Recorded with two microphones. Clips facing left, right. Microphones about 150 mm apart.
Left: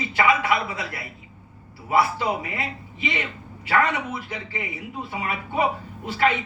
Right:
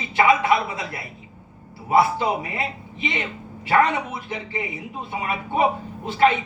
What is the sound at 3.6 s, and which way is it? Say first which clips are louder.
A man's voice: right 3 dB; 25° right (ahead or behind).